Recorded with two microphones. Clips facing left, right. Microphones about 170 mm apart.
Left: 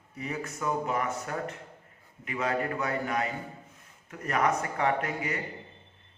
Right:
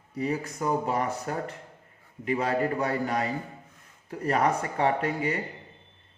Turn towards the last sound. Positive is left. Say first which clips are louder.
# right 3 dB
turn(degrees=-30)  # may be behind; listen again after turning